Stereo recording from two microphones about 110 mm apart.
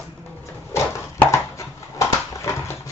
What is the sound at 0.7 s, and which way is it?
Dog, 25° left (ahead or behind).